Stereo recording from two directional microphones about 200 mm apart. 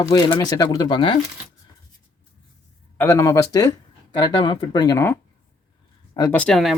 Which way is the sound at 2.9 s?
15° left (ahead or behind).